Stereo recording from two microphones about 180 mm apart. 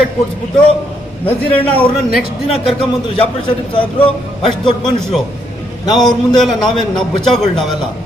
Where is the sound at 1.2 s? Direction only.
10° left (ahead or behind).